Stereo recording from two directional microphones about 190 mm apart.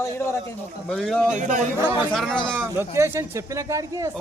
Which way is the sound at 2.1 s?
5° left (ahead or behind).